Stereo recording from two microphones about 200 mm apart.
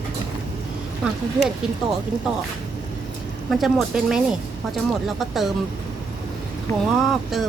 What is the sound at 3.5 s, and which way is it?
Speech, centre (ahead or behind).